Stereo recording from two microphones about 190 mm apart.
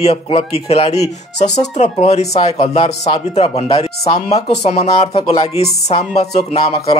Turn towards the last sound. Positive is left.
turn(degrees=35)  # may be behind; listen again after turning